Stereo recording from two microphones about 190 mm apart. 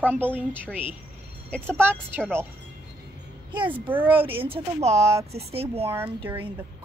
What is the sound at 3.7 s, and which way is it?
Speech, 10° right (ahead or behind).